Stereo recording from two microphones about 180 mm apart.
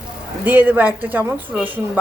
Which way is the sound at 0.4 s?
10° right (ahead or behind).